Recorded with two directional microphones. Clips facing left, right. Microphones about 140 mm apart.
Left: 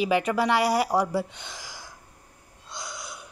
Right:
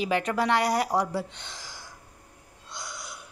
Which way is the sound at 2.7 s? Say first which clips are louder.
Left 2 dB; 15° left (ahead or behind).